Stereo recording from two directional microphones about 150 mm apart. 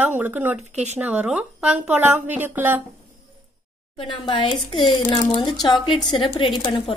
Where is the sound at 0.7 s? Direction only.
50° right (ahead or behind).